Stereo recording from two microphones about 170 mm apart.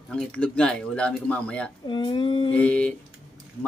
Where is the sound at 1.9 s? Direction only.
30° left (ahead or behind).